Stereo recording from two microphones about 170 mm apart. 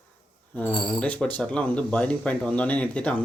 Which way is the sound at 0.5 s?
10° left (ahead or behind).